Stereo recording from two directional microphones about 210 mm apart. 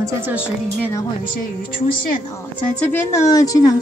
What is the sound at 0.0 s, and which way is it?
Speech, 10° right (ahead or behind).